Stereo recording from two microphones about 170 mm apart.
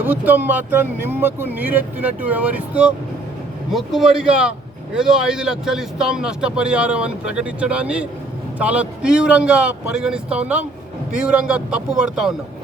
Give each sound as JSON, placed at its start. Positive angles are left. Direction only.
{"t": 0.0, "sound": "a man's voice", "side_deg": -10}